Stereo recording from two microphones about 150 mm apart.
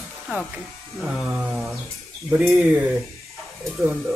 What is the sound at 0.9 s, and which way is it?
Speech, 5° right (ahead or behind).